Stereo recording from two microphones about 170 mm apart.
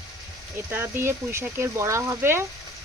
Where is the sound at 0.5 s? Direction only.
15° right (ahead or behind).